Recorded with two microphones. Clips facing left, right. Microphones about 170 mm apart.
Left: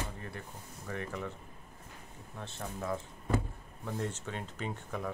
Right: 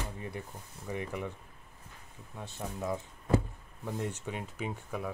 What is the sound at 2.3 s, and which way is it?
Speech, 10° right (ahead or behind).